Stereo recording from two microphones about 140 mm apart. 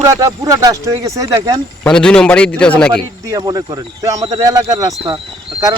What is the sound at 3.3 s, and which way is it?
Speech, 25° right (ahead or behind).